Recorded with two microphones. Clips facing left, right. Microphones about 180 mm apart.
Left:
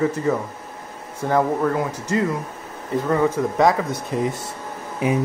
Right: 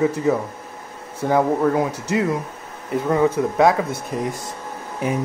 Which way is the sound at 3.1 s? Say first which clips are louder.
Right 2 dB; 5° right (ahead or behind).